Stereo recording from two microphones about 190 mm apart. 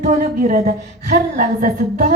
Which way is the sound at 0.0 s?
40° right (ahead or behind).